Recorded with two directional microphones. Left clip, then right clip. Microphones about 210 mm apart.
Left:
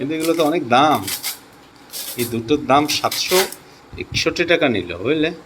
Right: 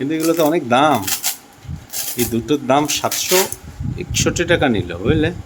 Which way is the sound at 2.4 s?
25° right (ahead or behind).